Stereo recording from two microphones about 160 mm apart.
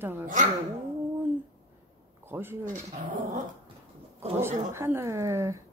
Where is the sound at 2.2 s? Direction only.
15° right (ahead or behind).